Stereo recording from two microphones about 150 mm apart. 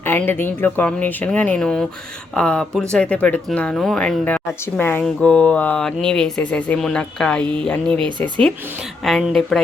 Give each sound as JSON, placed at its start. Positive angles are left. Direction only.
{"t": 0.0, "sound": "speech", "side_deg": 15}